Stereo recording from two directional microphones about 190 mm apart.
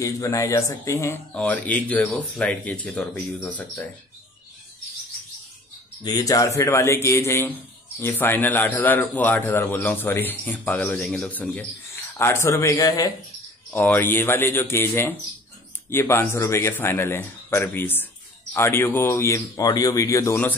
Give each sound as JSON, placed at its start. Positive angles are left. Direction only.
{"t": 0.0, "sound": "a man's voice", "side_deg": 15}
{"t": 6.0, "sound": "a man's voice", "side_deg": 20}